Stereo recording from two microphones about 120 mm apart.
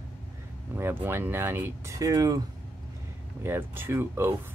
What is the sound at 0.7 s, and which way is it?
Speech, 20° right (ahead or behind).